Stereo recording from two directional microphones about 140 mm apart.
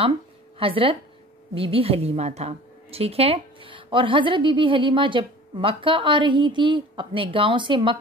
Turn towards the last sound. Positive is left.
turn(degrees=-35)  # may be behind; listen again after turning